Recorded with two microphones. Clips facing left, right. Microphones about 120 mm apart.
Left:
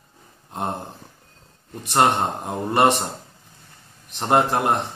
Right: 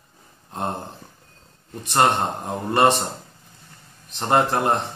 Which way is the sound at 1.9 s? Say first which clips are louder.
Left 1 dB; 20° left (ahead or behind).